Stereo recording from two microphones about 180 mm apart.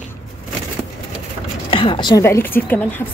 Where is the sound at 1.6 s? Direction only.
30° left (ahead or behind); by 3.0 s 10° left (ahead or behind).